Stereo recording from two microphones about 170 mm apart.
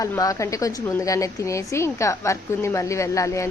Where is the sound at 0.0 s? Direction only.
20° left (ahead or behind).